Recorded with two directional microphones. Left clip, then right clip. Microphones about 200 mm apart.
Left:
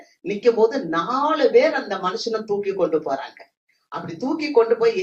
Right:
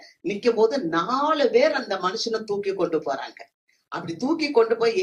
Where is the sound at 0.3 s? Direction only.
40° right (ahead or behind).